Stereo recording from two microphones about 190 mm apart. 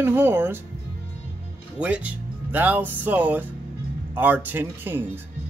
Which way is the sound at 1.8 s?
5° right (ahead or behind).